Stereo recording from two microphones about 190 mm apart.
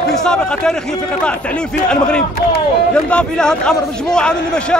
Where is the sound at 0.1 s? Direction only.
5° left (ahead or behind).